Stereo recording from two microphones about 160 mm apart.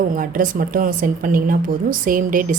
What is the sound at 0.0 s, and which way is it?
A woman's voice, 60° right (ahead or behind).